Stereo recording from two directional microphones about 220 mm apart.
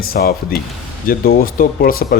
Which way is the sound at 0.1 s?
45° left (ahead or behind).